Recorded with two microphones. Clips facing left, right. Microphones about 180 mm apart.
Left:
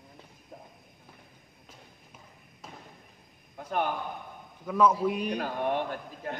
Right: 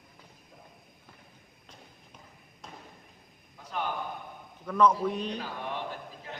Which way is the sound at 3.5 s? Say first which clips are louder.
Left 5 dB; 55° left (ahead or behind).